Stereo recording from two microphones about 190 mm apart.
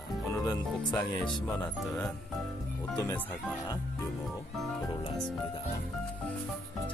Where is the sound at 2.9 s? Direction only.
10° left (ahead or behind).